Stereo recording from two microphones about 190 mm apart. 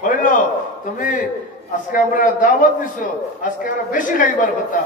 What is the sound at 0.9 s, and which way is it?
A man's voice, 45° left (ahead or behind).